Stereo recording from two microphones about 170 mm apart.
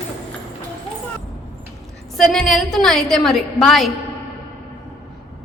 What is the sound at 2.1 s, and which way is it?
A woman's voice, centre (ahead or behind).